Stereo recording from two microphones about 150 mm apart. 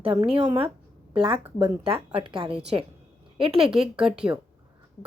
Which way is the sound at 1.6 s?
35° right (ahead or behind).